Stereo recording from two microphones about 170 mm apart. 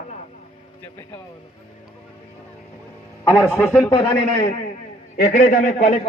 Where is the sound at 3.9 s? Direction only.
30° left (ahead or behind).